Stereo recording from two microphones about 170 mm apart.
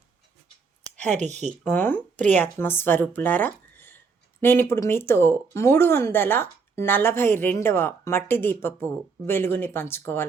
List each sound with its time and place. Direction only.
0.9 s a sound: 5° left (ahead or behind)
1.2 s speech: 40° right (ahead or behind)
1.6 s speech: 10° left (ahead or behind)